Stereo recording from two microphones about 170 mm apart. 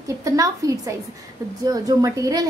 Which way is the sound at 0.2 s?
20° right (ahead or behind).